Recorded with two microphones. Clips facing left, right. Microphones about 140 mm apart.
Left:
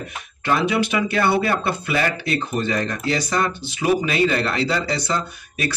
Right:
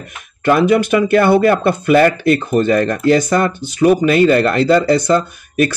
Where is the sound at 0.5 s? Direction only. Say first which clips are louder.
Right 8 dB; 50° right (ahead or behind).